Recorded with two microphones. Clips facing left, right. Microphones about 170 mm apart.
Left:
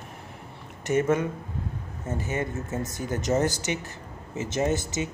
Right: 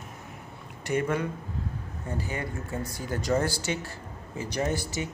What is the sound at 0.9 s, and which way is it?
Speech, 20° left (ahead or behind).